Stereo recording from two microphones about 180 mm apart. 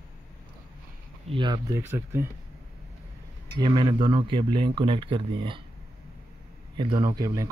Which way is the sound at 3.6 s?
25° right (ahead or behind).